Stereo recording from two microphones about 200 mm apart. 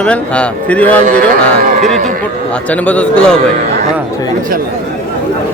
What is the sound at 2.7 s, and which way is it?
Speech, 5° left (ahead or behind).